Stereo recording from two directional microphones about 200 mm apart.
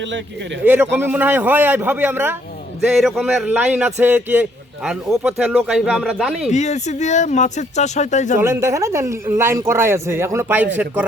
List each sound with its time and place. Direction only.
0.6 s a man's voice: 10° right (ahead or behind)
6.5 s speech: 35° left (ahead or behind)
8.4 s speech: 15° right (ahead or behind)